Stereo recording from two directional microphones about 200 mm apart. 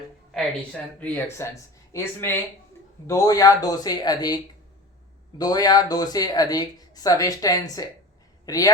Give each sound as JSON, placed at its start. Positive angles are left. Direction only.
{"t": 0.9, "sound": "speech", "side_deg": 10}
{"t": 5.4, "sound": "speech", "side_deg": 20}